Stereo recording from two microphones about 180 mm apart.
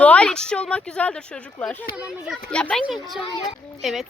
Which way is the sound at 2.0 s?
5° right (ahead or behind).